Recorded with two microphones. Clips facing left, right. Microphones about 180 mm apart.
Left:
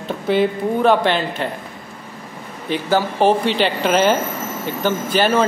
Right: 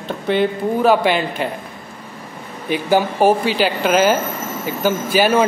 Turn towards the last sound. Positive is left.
turn(degrees=-10)  # may be behind; listen again after turning